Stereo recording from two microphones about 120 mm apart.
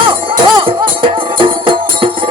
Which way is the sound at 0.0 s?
45° right (ahead or behind).